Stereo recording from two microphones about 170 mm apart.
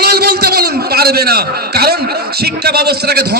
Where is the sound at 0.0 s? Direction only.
70° right (ahead or behind).